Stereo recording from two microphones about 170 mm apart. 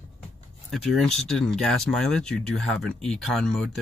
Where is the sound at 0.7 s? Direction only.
Centre (ahead or behind).